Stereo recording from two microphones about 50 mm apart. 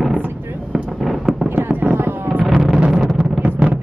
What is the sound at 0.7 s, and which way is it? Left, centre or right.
Fireworks, centre.